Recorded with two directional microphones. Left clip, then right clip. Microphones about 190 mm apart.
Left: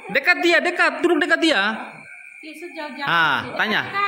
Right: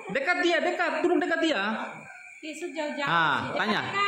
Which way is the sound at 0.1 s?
35° left (ahead or behind).